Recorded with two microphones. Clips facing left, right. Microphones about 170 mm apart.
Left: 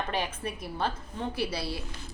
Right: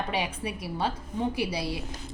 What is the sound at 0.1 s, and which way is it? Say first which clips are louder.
A woman's voice: right 2 dB; 15° right (ahead or behind).